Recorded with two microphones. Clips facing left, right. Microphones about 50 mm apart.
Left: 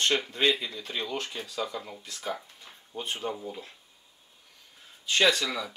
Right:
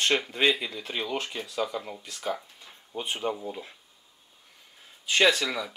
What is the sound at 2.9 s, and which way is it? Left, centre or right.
Speech, centre.